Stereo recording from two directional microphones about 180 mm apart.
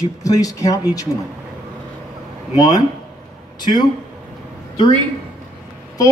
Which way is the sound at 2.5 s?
20° left (ahead or behind).